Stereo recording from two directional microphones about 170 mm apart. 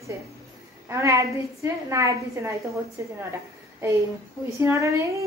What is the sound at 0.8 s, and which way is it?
A woman's voice, 15° right (ahead or behind).